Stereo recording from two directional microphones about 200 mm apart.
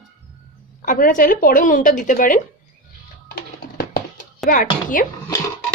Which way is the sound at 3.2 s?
50° left (ahead or behind).